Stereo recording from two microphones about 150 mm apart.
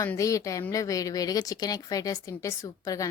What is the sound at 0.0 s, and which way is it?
A woman's voice, 20° left (ahead or behind).